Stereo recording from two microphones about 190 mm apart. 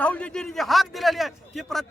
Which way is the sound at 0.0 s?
5° left (ahead or behind).